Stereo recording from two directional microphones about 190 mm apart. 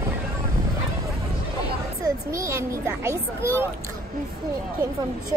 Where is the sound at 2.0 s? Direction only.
15° right (ahead or behind).